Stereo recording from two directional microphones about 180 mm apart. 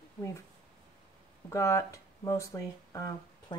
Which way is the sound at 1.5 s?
15° left (ahead or behind).